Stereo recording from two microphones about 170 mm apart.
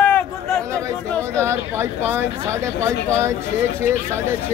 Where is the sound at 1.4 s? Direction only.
15° right (ahead or behind).